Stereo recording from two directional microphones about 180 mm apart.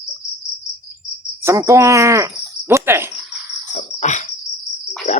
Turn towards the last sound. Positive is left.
turn(degrees=35)  # may be behind; listen again after turning